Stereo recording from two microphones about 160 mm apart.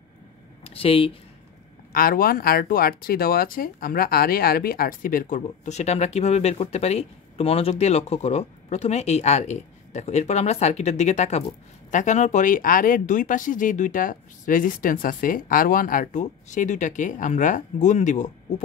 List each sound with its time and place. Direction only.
0.7 s speech: 35° left (ahead or behind)
1.9 s speech: 65° left (ahead or behind); by 18.3 s 50° left (ahead or behind)